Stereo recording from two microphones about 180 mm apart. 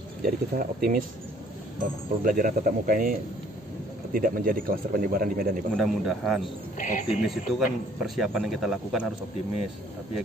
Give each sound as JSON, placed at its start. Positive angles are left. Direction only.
{"t": 0.2, "sound": "speech", "side_deg": -55}
{"t": 5.8, "sound": "speech", "side_deg": 0}